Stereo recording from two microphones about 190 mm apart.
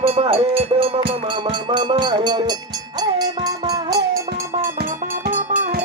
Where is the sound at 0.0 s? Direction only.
30° right (ahead or behind).